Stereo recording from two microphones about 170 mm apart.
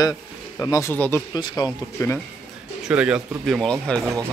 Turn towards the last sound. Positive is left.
turn(degrees=5)  # may be behind; listen again after turning